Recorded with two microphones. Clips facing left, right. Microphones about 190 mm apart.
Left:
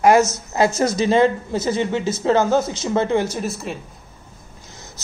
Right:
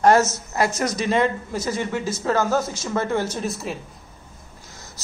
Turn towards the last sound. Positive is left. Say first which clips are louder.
# left 1 dB
turn(degrees=0)  # may be behind; listen again after turning